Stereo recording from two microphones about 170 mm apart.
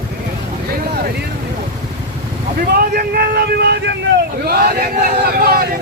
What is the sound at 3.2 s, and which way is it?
Speech, 70° right (ahead or behind).